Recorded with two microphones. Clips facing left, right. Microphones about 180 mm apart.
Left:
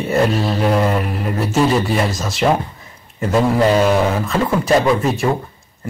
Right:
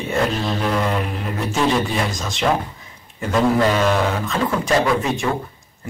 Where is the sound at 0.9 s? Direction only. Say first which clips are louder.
Left 4 dB; 5° left (ahead or behind).